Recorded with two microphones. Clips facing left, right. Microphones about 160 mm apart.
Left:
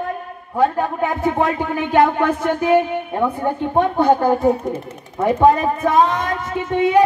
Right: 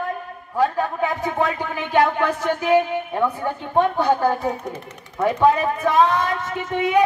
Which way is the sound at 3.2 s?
15° left (ahead or behind).